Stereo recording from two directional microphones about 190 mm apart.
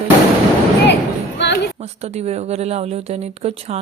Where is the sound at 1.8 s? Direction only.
35° right (ahead or behind).